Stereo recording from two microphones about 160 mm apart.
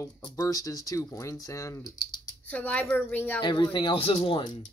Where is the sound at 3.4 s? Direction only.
30° left (ahead or behind).